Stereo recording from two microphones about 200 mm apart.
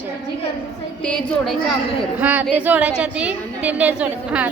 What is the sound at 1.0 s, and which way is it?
Speech, 5° left (ahead or behind).